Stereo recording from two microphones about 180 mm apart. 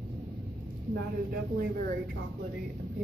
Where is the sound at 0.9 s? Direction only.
55° right (ahead or behind).